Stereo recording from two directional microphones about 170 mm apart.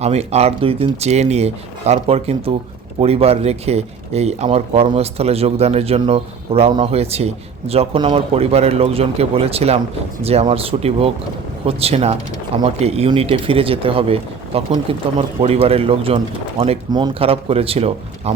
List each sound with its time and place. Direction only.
0.0 s speech: 40° right (ahead or behind)